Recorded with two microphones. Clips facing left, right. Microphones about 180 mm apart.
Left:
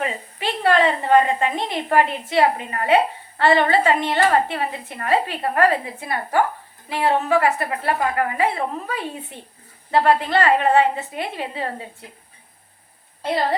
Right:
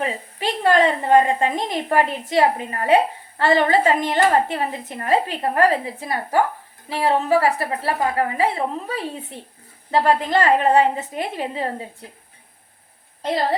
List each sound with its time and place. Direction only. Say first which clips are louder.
0.0 s a woman's voice: right 1 dB; 40° right (ahead or behind)